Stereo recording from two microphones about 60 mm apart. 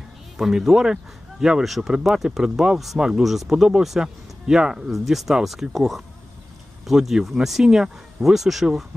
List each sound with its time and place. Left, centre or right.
0.4 s speech: centre